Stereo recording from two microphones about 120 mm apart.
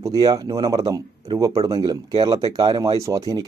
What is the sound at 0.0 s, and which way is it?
Speech, 30° right (ahead or behind).